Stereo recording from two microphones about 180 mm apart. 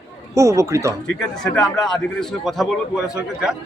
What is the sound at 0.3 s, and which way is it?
Speech, 15° right (ahead or behind).